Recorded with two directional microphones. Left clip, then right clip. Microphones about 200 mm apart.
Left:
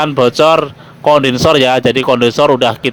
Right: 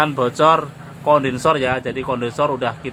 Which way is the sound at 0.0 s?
35° left (ahead or behind).